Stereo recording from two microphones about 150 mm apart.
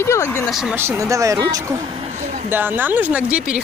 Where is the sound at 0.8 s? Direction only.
20° right (ahead or behind).